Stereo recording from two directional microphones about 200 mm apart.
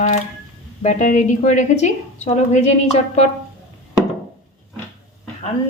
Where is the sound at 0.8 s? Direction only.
40° left (ahead or behind).